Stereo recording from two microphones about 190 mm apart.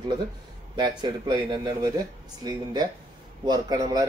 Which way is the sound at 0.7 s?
25° right (ahead or behind).